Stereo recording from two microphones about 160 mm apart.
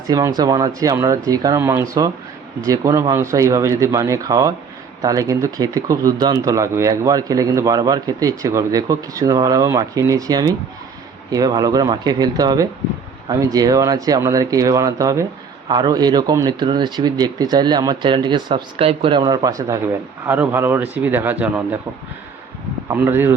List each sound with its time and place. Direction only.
0.1 s speech: 20° right (ahead or behind)
22.9 s speech: 15° right (ahead or behind)